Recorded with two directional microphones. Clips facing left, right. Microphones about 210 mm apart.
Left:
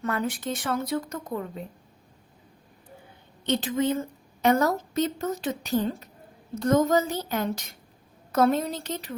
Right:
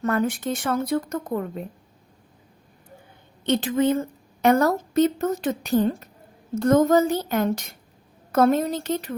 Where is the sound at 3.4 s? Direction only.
55° right (ahead or behind).